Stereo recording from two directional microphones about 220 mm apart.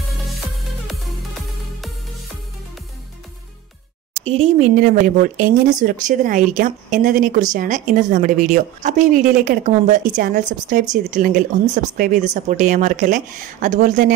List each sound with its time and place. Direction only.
4.2 s a woman's voice: 30° right (ahead or behind)